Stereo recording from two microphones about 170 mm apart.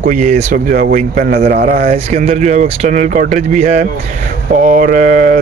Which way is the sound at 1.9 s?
40° right (ahead or behind).